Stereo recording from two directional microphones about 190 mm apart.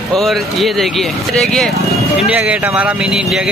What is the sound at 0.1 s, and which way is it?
Speech, centre (ahead or behind).